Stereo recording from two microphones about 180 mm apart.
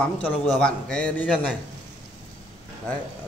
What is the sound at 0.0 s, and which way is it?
A man's voice, 5° left (ahead or behind).